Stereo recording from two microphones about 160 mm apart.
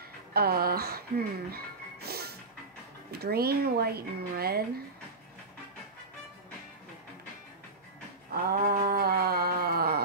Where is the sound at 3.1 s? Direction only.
75° right (ahead or behind).